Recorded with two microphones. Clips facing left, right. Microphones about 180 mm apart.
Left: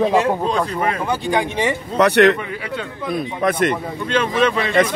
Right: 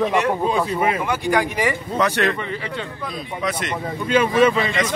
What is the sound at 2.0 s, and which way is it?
Speech, 70° left (ahead or behind).